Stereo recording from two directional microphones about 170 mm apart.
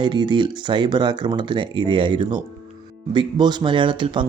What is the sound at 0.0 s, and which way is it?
Speech, 30° right (ahead or behind).